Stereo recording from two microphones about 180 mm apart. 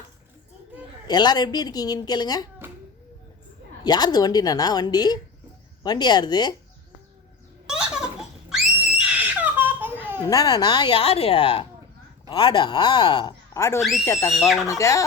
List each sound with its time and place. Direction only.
1.0 s speech: 25° left (ahead or behind)
3.8 s speech: 20° left (ahead or behind)
7.7 s screaming: 5° right (ahead or behind)
10.2 s speech: 20° left (ahead or behind)
14.3 s speech: centre (ahead or behind)
14.7 s speech: 15° left (ahead or behind)